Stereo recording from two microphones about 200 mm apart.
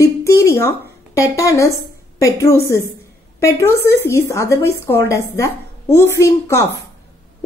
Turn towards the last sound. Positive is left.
turn(degrees=15)  # may be behind; listen again after turning